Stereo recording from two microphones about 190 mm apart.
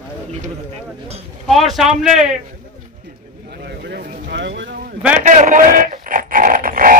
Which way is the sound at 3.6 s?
55° right (ahead or behind).